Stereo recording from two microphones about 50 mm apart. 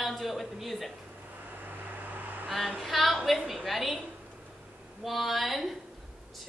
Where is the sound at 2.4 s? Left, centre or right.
Centre.